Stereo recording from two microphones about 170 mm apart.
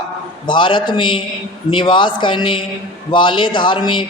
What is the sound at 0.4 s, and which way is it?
A woman's voice, 30° left (ahead or behind).